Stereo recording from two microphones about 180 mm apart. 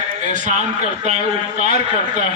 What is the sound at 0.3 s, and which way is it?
A man's voice, 45° right (ahead or behind).